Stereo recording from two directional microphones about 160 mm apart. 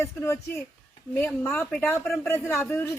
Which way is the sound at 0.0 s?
15° left (ahead or behind).